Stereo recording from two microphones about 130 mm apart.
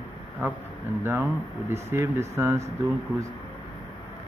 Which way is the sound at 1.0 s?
15° right (ahead or behind).